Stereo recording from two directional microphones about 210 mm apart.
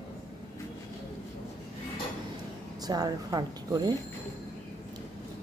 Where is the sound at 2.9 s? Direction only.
20° right (ahead or behind).